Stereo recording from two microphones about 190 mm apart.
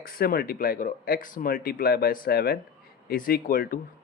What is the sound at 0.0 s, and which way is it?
Speech, 50° left (ahead or behind).